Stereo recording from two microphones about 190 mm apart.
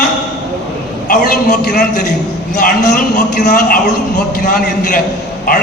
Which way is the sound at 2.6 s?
45° left (ahead or behind).